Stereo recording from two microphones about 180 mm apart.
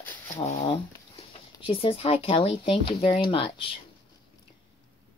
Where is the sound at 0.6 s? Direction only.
30° left (ahead or behind).